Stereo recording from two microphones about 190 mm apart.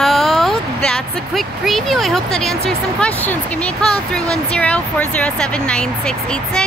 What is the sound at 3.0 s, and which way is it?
Speech, 10° left (ahead or behind).